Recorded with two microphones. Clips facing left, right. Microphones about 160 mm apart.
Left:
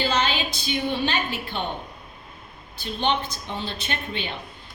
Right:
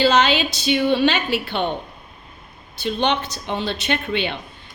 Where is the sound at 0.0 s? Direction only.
80° right.